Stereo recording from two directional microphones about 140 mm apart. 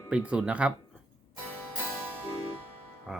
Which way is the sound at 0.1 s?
10° right (ahead or behind).